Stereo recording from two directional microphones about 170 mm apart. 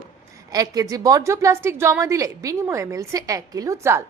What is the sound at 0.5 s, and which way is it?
A woman's voice, 20° right (ahead or behind).